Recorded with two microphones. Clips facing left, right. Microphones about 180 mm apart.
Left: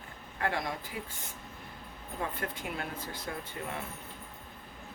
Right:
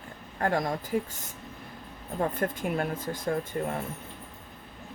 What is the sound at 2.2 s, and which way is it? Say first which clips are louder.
Speech: right 8 dB; 45° right (ahead or behind).